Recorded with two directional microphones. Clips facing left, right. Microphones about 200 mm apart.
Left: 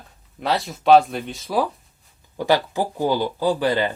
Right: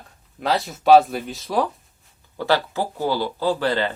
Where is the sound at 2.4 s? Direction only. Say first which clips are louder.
Left 2 dB; 15° left (ahead or behind).